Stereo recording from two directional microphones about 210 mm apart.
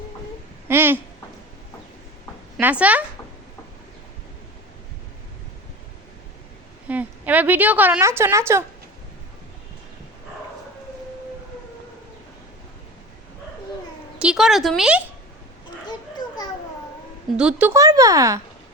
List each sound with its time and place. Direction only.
0.7 s speech: 10° right (ahead or behind)
2.6 s speech: 5° right (ahead or behind)
6.8 s a woman's voice: 5° right (ahead or behind)
14.2 s a woman's voice: 5° right (ahead or behind)
15.9 s children playing: 20° left (ahead or behind)
17.3 s speech: 5° right (ahead or behind)